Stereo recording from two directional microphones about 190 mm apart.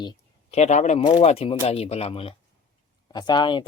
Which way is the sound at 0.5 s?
35° left (ahead or behind).